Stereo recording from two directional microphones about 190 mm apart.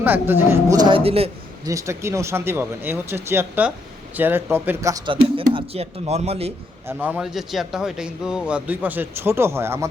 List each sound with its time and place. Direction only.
0.0 s speech: 10° right (ahead or behind); by 1.3 s 30° right (ahead or behind)
1.6 s speech: 15° right (ahead or behind); by 6.5 s 30° right (ahead or behind)
6.8 s speech: 10° right (ahead or behind)